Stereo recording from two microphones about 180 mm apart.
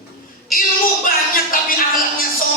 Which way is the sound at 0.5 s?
55° left (ahead or behind).